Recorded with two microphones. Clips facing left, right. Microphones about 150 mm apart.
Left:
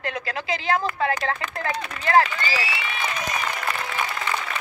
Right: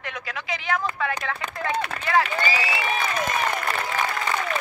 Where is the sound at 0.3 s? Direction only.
30° left (ahead or behind).